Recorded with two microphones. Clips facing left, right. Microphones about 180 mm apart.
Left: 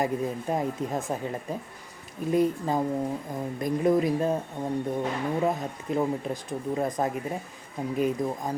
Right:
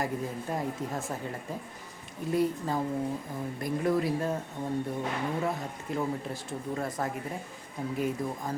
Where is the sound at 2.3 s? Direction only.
20° left (ahead or behind).